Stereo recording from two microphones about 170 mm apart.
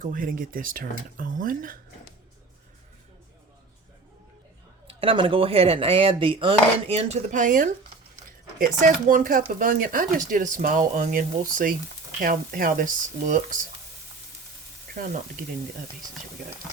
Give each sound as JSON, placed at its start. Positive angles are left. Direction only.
{"t": 0.0, "sound": "speech", "side_deg": -55}
{"t": 4.9, "sound": "speech", "side_deg": -30}
{"t": 8.8, "sound": "speech", "side_deg": -50}
{"t": 14.9, "sound": "speech", "side_deg": -50}